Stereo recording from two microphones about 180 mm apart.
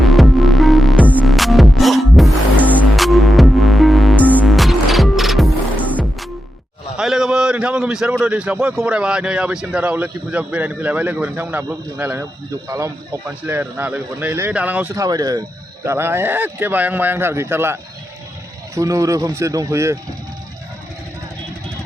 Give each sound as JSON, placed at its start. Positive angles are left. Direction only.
{"t": 0.0, "sound": "hum", "side_deg": 0}
{"t": 6.9, "sound": "a man's voice", "side_deg": 0}